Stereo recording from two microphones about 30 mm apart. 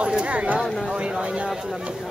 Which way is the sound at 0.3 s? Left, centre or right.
Right.